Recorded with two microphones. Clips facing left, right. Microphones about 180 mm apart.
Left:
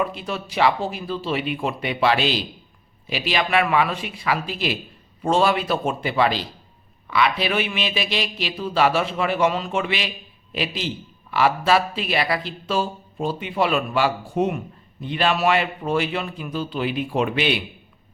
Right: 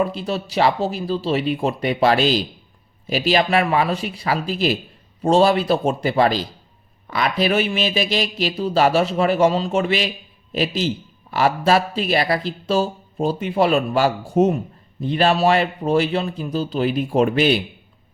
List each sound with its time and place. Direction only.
0.0 s a man's voice: 35° right (ahead or behind)